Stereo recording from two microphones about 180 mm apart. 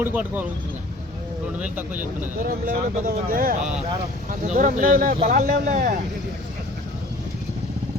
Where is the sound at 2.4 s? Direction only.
55° right (ahead or behind).